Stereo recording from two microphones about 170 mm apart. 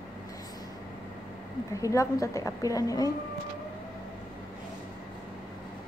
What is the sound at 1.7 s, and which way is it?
A woman's voice, 20° left (ahead or behind).